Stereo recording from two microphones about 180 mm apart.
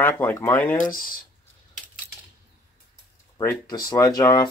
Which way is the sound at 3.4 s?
20° left (ahead or behind).